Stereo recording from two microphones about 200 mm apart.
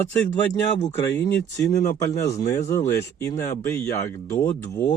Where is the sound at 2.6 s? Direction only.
15° left (ahead or behind).